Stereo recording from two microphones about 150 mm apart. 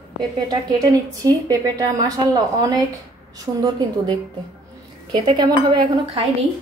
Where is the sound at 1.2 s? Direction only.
25° right (ahead or behind).